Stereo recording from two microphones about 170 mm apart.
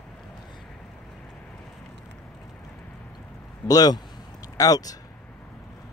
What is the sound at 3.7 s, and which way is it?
Speech, 25° left (ahead or behind).